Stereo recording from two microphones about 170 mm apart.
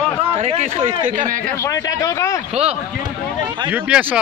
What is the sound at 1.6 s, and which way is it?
Speech, 20° left (ahead or behind).